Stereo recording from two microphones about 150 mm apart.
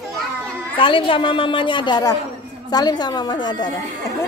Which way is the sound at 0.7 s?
35° left (ahead or behind).